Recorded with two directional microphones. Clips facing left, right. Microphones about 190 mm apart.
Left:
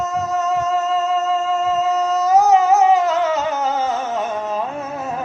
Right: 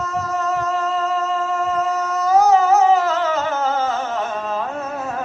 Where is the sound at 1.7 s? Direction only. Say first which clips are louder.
Left 3 dB; 20° left (ahead or behind).